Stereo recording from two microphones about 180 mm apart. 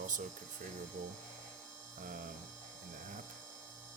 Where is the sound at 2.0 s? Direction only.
45° right (ahead or behind).